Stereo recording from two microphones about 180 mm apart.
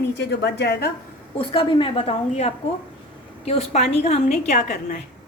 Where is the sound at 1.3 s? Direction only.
30° left (ahead or behind); by 5.0 s 45° left (ahead or behind).